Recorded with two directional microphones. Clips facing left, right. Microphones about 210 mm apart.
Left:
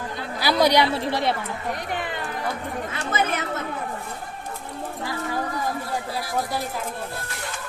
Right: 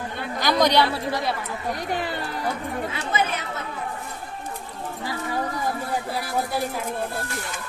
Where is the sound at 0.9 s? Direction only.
25° left (ahead or behind).